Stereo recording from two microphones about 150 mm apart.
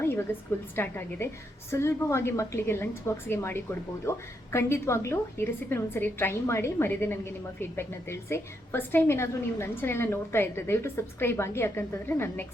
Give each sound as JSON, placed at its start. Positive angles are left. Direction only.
{"t": 0.3, "sound": "a woman's voice", "side_deg": 15}